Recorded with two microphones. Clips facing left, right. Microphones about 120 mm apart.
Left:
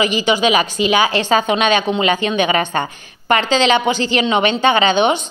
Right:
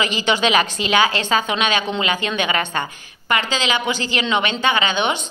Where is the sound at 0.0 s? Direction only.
15° left (ahead or behind).